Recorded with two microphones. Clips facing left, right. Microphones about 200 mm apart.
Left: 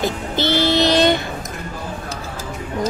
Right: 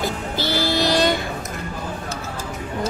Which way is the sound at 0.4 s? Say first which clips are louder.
Left 5 dB; 20° left (ahead or behind).